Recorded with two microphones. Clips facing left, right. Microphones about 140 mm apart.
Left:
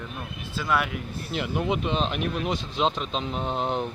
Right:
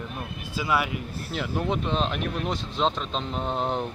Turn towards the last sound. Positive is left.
turn(degrees=0)  # may be behind; listen again after turning